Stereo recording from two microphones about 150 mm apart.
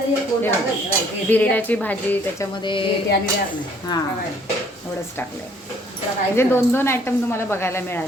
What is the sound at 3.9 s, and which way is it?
Speech, 25° left (ahead or behind).